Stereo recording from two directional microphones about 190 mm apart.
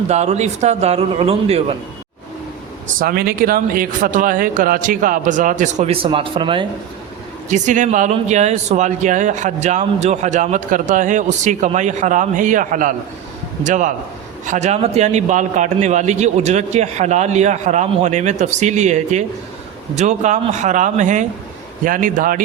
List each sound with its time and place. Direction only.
0.1 s speech: 35° right (ahead or behind)
2.8 s a man's voice: 50° right (ahead or behind); by 6.7 s 25° right (ahead or behind)
7.5 s a man's voice: 40° right (ahead or behind)